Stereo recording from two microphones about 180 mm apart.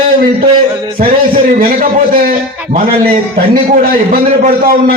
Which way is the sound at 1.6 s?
50° right (ahead or behind).